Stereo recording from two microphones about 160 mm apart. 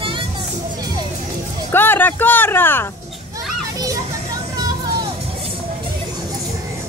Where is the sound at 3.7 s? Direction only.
20° right (ahead or behind).